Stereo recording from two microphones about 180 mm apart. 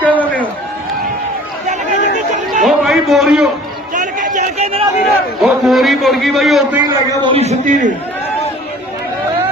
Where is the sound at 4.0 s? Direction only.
45° right (ahead or behind).